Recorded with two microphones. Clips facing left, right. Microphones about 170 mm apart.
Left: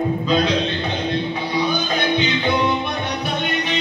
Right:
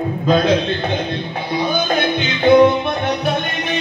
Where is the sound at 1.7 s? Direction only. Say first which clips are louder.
Right 3 dB; 50° right (ahead or behind).